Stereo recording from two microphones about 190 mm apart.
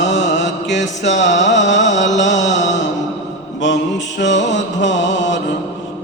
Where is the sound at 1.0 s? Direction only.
70° left (ahead or behind).